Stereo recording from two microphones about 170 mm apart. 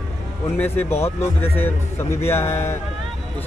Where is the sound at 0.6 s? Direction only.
15° left (ahead or behind).